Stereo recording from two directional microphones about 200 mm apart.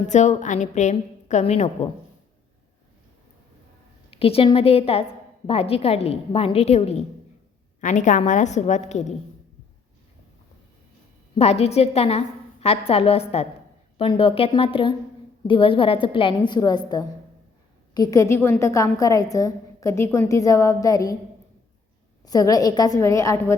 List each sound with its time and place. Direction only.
0.1 s a woman's voice: 35° left (ahead or behind)
4.1 s a woman's voice: 30° left (ahead or behind)
11.3 s a woman's voice: 30° left (ahead or behind); by 21.2 s 15° left (ahead or behind)
22.2 s a woman's voice: 20° left (ahead or behind)